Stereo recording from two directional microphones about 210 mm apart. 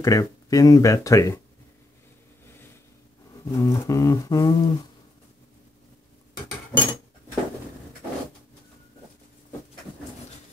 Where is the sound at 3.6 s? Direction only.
15° left (ahead or behind).